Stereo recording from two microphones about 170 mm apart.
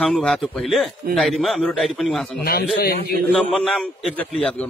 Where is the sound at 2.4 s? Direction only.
60° left (ahead or behind).